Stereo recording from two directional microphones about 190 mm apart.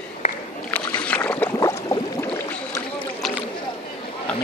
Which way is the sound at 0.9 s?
5° left (ahead or behind).